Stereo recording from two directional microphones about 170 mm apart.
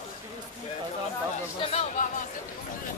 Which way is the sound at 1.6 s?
40° left (ahead or behind).